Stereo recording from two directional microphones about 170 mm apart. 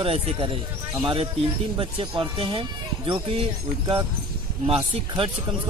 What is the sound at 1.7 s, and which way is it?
Speech, 30° right (ahead or behind).